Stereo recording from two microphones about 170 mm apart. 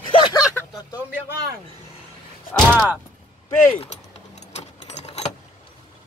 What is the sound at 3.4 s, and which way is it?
Speech, 35° left (ahead or behind).